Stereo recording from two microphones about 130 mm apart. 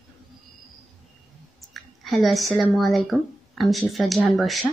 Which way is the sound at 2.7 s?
Centre (ahead or behind).